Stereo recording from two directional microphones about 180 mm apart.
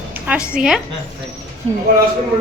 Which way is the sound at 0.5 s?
5° right (ahead or behind).